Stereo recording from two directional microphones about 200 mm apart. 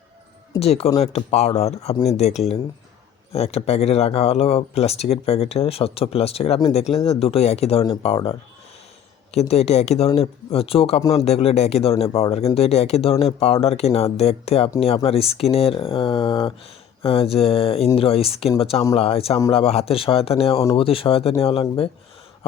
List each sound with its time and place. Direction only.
0.6 s speech: 30° left (ahead or behind)